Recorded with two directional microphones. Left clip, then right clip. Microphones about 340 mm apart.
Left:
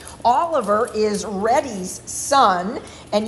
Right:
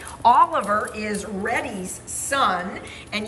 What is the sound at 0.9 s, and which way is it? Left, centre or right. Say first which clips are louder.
Speech: left 8 dB; left.